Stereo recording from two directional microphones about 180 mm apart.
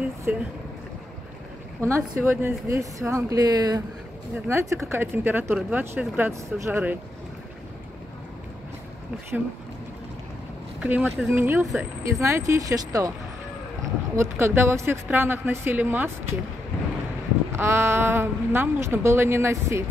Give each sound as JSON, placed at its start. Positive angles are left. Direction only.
{"t": 0.3, "sound": "speech", "side_deg": -10}
{"t": 1.8, "sound": "speech", "side_deg": -15}
{"t": 10.8, "sound": "speech", "side_deg": -5}
{"t": 11.6, "sound": "speech", "side_deg": 0}
{"t": 12.0, "sound": "speech", "side_deg": -15}
{"t": 14.1, "sound": "speech", "side_deg": -15}
{"t": 17.5, "sound": "speech", "side_deg": -15}